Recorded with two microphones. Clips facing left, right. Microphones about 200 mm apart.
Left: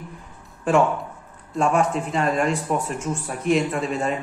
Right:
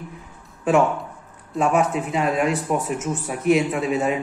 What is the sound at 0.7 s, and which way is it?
A woman's voice, centre (ahead or behind).